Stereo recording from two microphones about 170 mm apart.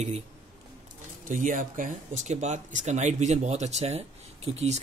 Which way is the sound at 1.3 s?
50° right (ahead or behind).